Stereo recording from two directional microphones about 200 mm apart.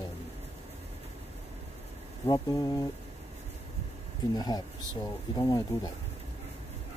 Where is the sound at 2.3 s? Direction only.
20° left (ahead or behind).